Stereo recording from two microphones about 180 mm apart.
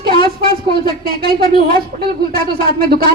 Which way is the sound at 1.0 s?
55° right (ahead or behind).